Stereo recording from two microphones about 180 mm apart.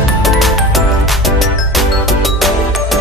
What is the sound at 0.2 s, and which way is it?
Music, centre (ahead or behind).